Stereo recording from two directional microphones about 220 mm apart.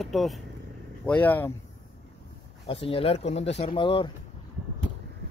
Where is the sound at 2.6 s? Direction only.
25° left (ahead or behind).